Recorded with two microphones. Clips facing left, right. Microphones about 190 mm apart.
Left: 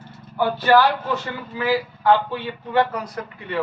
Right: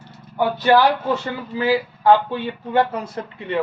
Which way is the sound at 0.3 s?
20° right (ahead or behind).